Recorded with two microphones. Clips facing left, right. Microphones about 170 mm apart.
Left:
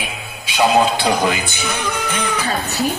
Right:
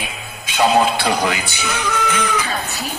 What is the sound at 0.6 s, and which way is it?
A man's voice, 20° left (ahead or behind).